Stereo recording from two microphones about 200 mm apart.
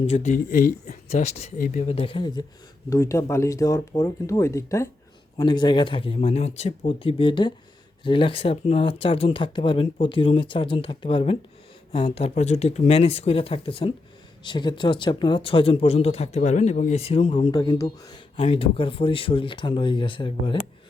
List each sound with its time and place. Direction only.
0.0 s speech: 35° left (ahead or behind)